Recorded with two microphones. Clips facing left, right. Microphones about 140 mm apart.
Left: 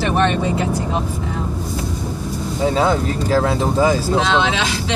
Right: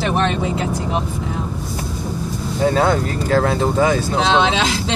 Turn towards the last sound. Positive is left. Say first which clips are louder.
# even
turn(degrees=15)  # may be behind; listen again after turning